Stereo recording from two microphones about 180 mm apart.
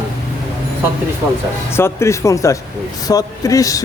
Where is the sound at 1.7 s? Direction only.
15° left (ahead or behind).